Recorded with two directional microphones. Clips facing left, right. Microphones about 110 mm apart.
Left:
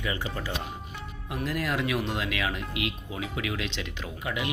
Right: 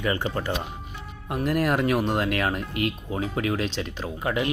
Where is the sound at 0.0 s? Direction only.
50° right (ahead or behind).